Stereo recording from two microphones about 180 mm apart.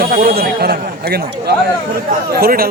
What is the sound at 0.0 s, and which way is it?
A man's voice, 55° right (ahead or behind).